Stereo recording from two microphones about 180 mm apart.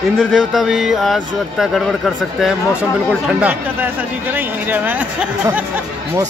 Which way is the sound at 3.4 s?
10° right (ahead or behind).